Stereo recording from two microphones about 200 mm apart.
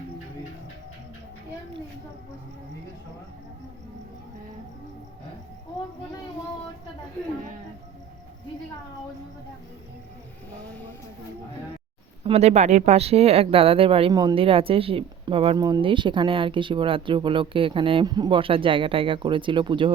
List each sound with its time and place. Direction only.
12.2 s speech: 30° right (ahead or behind)